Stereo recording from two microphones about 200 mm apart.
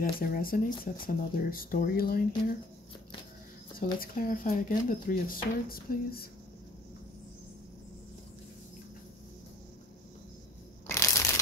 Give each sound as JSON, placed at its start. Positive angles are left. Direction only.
{"t": 0.2, "sound": "speech", "side_deg": 45}
{"t": 4.0, "sound": "speech", "side_deg": 45}
{"t": 10.9, "sound": "crushing", "side_deg": 15}